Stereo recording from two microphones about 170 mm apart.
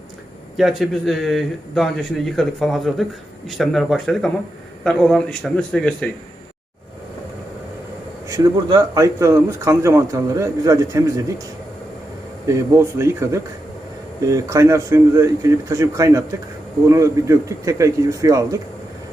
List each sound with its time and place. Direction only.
0.5 s speech: centre (ahead or behind)
8.3 s speech: 20° right (ahead or behind)
12.5 s speech: 15° right (ahead or behind)